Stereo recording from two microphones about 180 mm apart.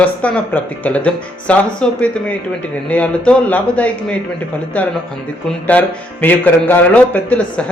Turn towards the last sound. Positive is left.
turn(degrees=5)  # may be behind; listen again after turning